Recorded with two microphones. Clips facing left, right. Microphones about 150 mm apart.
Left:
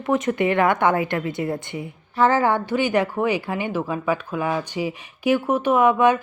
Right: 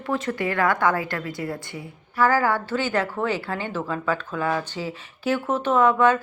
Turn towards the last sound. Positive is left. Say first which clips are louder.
# left 2 dB
turn(degrees=15)  # may be behind; listen again after turning